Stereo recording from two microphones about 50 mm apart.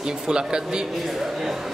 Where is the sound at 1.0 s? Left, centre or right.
Centre.